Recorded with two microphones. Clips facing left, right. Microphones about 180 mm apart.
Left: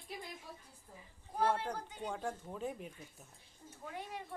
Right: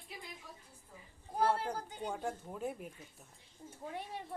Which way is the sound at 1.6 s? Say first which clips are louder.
Right 2 dB; 5° right (ahead or behind).